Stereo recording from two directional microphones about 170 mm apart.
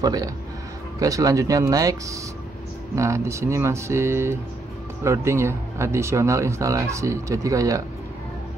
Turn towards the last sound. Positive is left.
turn(degrees=-20)  # may be behind; listen again after turning